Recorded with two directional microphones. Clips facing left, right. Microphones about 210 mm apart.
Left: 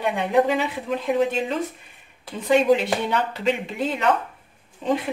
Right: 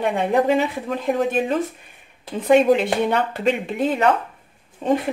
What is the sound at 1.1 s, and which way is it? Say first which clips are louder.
Speech: right 2 dB; 55° right (ahead or behind).